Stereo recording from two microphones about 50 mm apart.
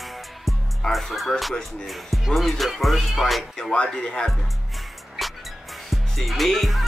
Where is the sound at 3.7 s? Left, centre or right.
Centre.